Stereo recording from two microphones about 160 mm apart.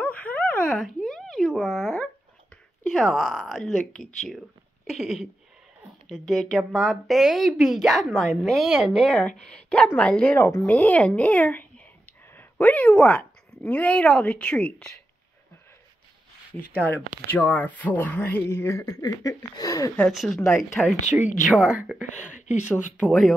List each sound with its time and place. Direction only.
0.0 s a sound: 10° left (ahead or behind)
2.9 s a woman's voice: centre (ahead or behind)
16.7 s speech: 10° left (ahead or behind)
20.1 s a woman's voice: centre (ahead or behind)
21.0 s speech: 45° left (ahead or behind)
23.0 s a woman's voice: centre (ahead or behind)